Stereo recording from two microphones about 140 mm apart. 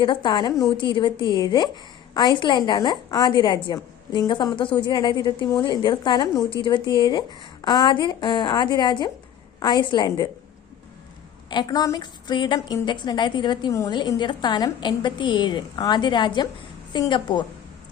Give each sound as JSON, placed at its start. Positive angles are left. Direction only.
{"t": 0.0, "sound": "a woman's voice", "side_deg": 35}
{"t": 11.4, "sound": "a woman's voice", "side_deg": 30}